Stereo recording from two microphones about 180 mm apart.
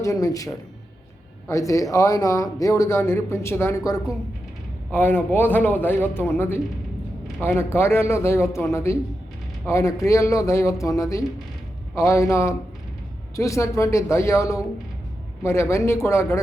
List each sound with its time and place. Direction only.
0.0 s speech: 20° left (ahead or behind)